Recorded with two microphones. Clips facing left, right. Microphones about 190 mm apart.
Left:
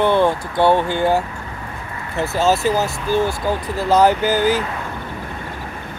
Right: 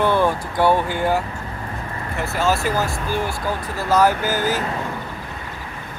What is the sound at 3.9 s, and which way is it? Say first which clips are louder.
Speech: left 3 dB; 20° left (ahead or behind).